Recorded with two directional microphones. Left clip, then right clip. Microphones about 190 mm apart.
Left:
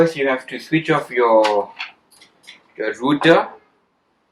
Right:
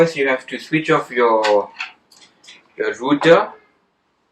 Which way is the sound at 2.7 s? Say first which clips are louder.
Right 1 dB; 25° left (ahead or behind).